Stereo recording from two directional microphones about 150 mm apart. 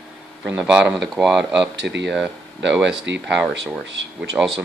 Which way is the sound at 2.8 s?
5° right (ahead or behind).